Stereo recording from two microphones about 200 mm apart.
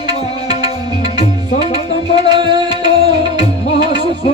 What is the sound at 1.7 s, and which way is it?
Music, 20° right (ahead or behind).